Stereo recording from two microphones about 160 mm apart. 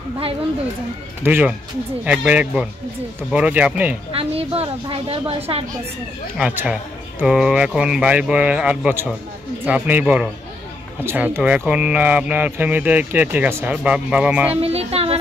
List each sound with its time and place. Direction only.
1.2 s speech: 15° right (ahead or behind)
4.1 s a woman's voice: 35° right (ahead or behind)
6.3 s speech: 10° right (ahead or behind)
14.6 s speech: 40° right (ahead or behind)